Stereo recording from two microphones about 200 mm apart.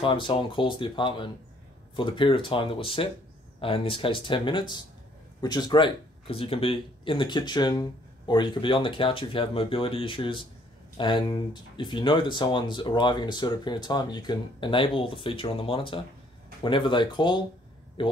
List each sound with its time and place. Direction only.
0.0 s a man's voice: 25° left (ahead or behind)